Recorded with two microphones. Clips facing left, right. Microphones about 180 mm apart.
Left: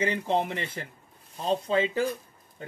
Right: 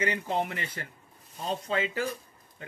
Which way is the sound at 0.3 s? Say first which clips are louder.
Left 3 dB; 30° left (ahead or behind).